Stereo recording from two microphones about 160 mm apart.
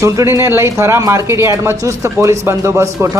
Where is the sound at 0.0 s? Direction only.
20° right (ahead or behind).